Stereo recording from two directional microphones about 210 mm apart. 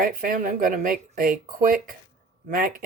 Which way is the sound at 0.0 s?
40° right (ahead or behind).